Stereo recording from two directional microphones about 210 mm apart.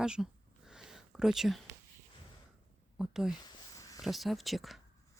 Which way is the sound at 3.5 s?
15° left (ahead or behind).